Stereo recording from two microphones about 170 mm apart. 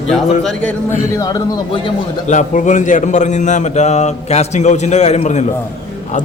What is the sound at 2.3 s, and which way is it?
A man's voice, 45° left (ahead or behind).